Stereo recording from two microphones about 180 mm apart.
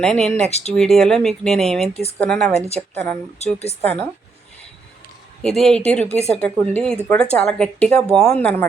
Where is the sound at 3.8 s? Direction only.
10° left (ahead or behind).